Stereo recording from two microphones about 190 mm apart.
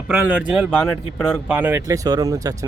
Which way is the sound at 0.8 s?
5° left (ahead or behind).